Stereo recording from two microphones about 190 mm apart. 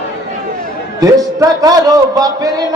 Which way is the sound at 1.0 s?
20° right (ahead or behind).